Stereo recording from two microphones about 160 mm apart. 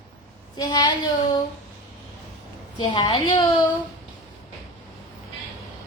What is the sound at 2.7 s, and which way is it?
Speech, 30° left (ahead or behind).